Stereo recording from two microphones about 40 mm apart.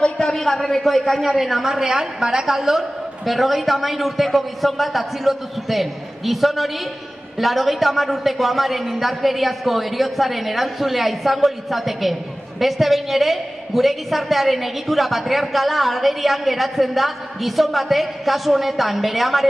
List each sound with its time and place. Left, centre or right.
0.0 s a sound: left
0.4 s a man's voice: centre
1.2 s a woman's voice: centre